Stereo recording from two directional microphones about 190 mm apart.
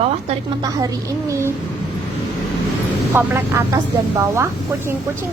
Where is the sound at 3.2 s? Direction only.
10° right (ahead or behind).